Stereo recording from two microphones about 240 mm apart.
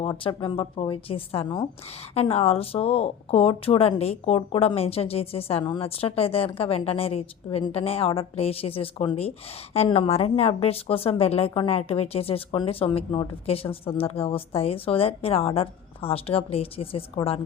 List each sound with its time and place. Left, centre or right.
0.0 s a woman's voice: centre